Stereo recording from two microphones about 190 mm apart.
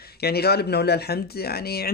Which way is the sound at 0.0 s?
55° left (ahead or behind).